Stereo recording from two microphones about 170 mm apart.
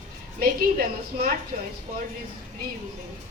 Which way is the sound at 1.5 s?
40° right (ahead or behind).